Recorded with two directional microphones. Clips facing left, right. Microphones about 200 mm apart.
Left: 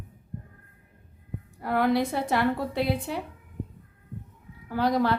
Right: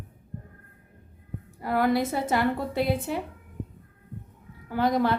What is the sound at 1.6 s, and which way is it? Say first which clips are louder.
A woman's voice: even; centre (ahead or behind).